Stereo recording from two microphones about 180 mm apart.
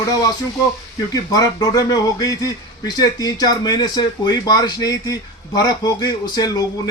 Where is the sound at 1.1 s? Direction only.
20° left (ahead or behind).